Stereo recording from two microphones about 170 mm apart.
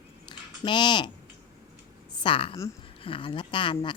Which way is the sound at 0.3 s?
25° left (ahead or behind).